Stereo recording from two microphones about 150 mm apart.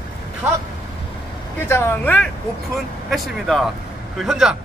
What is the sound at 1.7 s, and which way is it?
Speech, 15° left (ahead or behind).